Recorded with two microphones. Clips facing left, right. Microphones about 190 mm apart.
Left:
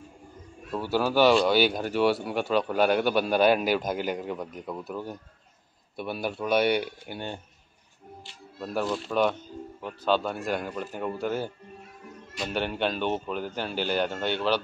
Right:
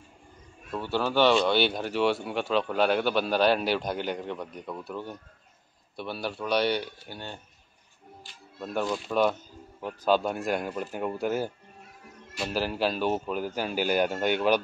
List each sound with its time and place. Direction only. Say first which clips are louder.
0.9 s speech: left 2 dB; 10° left (ahead or behind)
6.2 s speech: left 2 dB; 5° left (ahead or behind)
8.5 s speech: left 1 dB; centre (ahead or behind)